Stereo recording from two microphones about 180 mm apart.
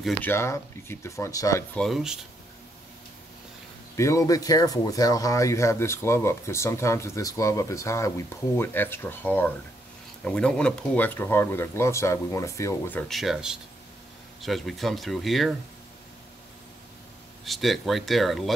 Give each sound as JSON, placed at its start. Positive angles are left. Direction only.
{"t": 0.2, "sound": "speech", "side_deg": 15}
{"t": 1.8, "sound": "speech", "side_deg": 0}
{"t": 3.9, "sound": "speech", "side_deg": 15}
{"t": 13.1, "sound": "speech", "side_deg": 0}
{"t": 17.5, "sound": "speech", "side_deg": 0}